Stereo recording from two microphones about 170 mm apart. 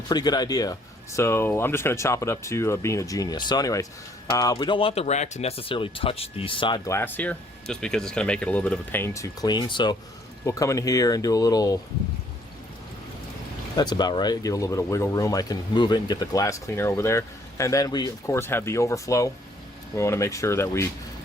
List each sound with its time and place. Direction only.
0.1 s speech: 25° left (ahead or behind)
13.7 s speech: 25° left (ahead or behind)